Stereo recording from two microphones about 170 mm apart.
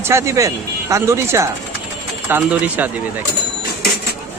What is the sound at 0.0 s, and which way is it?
Speech, 15° right (ahead or behind).